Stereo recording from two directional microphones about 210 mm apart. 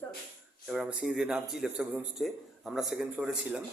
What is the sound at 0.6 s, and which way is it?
Speech, 5° right (ahead or behind).